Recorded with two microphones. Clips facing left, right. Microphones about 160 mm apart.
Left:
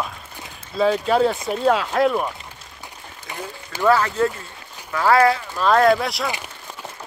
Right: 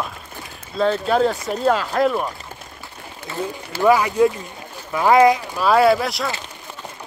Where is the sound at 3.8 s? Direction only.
15° right (ahead or behind).